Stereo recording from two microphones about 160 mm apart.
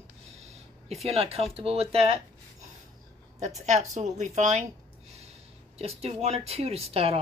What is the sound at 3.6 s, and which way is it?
Speech, 45° right (ahead or behind).